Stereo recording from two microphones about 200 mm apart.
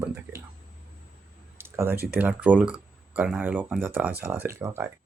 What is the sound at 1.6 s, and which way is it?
Speech, 10° right (ahead or behind).